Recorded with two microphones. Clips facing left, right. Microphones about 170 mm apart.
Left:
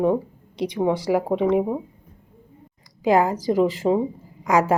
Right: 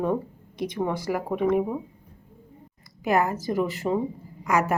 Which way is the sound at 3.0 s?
90° left.